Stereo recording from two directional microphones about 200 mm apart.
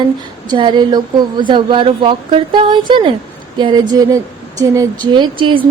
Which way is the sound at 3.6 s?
20° right (ahead or behind).